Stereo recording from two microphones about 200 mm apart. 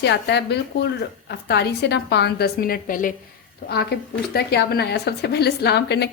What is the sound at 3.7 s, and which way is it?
Speech, 55° left (ahead or behind).